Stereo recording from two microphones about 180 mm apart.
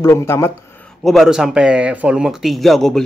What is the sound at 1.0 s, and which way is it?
Speech, centre (ahead or behind).